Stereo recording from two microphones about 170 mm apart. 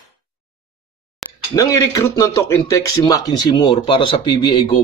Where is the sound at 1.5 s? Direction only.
20° left (ahead or behind).